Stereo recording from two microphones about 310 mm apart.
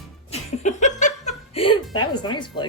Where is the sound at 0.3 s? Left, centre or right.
Left.